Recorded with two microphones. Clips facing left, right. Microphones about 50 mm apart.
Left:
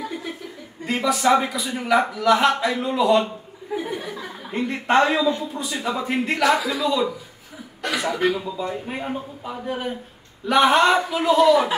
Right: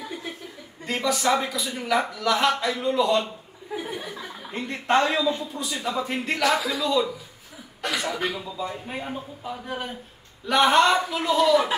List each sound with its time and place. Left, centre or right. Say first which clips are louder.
0.8 s a man's voice: left 4 dB; centre